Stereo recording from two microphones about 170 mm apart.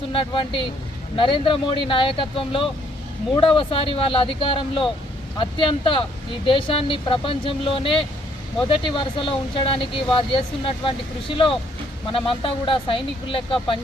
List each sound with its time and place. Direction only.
0.1 s speech: 30° left (ahead or behind)